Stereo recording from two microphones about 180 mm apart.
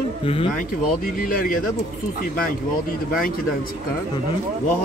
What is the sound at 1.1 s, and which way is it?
Speech, 50° left (ahead or behind).